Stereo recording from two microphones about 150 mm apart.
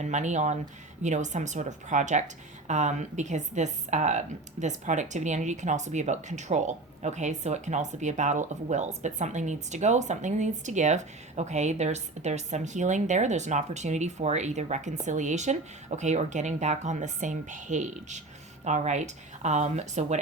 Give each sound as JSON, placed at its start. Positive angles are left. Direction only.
{"t": 0.0, "sound": "speech", "side_deg": -50}